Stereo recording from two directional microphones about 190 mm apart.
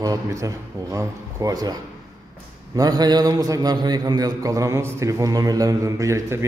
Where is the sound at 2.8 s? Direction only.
20° right (ahead or behind).